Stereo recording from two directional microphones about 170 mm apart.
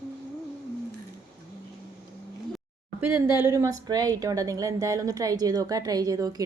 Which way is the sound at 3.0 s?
15° right (ahead or behind).